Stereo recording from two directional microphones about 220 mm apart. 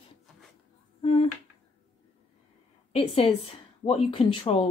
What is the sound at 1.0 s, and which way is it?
Speech, 25° left (ahead or behind).